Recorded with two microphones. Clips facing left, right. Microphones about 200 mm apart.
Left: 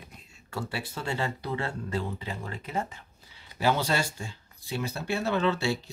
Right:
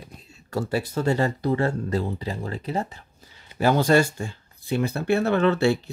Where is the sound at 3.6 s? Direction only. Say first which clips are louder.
Right 8 dB; 50° right (ahead or behind).